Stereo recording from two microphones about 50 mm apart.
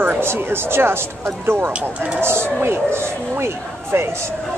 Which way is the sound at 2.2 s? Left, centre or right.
Right.